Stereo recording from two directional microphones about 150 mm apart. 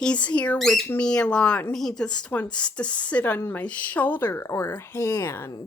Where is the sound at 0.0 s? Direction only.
10° left (ahead or behind).